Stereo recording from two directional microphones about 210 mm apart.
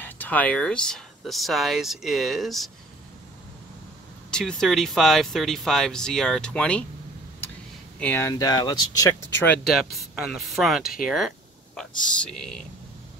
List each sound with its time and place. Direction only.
0.0 s speech: 10° left (ahead or behind)
4.3 s speech: 5° left (ahead or behind)
8.0 s speech: 10° left (ahead or behind)
9.5 s speech: centre (ahead or behind)
11.1 s a sound: centre (ahead or behind)
12.2 s speech: 5° left (ahead or behind)